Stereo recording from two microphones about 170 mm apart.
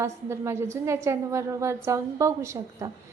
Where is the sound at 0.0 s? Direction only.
15° right (ahead or behind).